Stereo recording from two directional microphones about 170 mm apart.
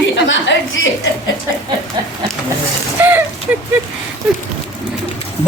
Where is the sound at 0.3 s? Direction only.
90° left.